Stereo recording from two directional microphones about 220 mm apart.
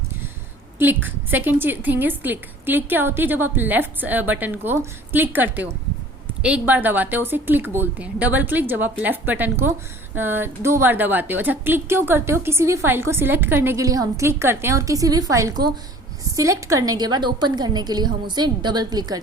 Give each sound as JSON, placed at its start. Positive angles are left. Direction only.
{"t": 0.8, "sound": "a woman's voice", "side_deg": -10}